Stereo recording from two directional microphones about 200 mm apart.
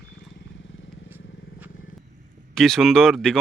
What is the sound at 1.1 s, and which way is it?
Vehicle, 10° right (ahead or behind).